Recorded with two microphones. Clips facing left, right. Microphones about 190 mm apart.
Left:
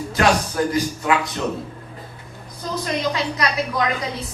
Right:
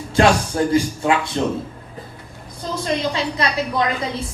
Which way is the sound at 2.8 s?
30° right (ahead or behind).